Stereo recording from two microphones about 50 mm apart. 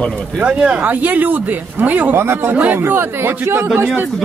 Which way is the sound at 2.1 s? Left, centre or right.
Right.